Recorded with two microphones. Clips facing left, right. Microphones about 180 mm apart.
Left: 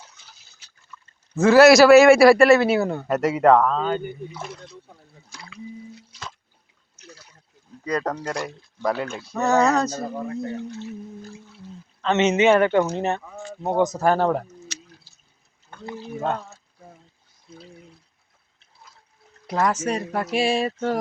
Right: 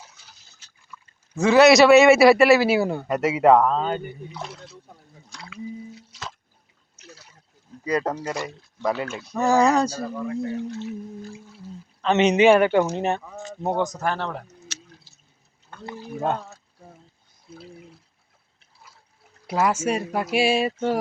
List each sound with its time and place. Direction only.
0.9 s a sound: 10° right (ahead or behind)
1.4 s speech: centre (ahead or behind)
7.9 s speech: 5° right (ahead or behind)
10.3 s speech: centre (ahead or behind)
11.3 s speech: 15° right (ahead or behind)
14.0 s speech: 40° left (ahead or behind)
17.5 s speech: 5° right (ahead or behind)
19.5 s speech: 10° right (ahead or behind)